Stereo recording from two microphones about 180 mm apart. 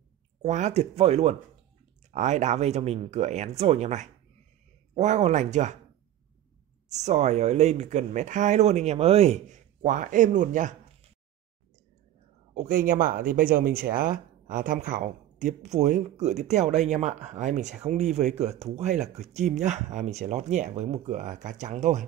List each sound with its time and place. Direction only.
0.4 s speech: 40° right (ahead or behind)
6.9 s speech: 40° right (ahead or behind)
12.5 s speech: 50° right (ahead or behind)